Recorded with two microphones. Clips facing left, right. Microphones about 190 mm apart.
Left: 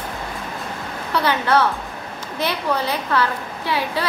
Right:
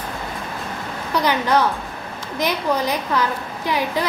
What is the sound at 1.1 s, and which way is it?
A woman's voice, 15° right (ahead or behind).